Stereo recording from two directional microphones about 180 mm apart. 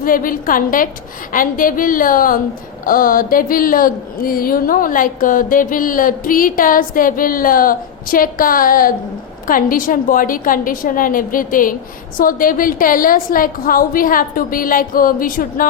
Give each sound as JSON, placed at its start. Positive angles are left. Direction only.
{"t": 0.0, "sound": "a woman's voice", "side_deg": 50}